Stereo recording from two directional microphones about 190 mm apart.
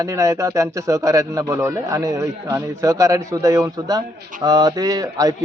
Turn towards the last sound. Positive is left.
turn(degrees=-20)  # may be behind; listen again after turning